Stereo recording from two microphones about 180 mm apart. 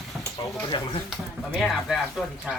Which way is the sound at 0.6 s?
25° left (ahead or behind).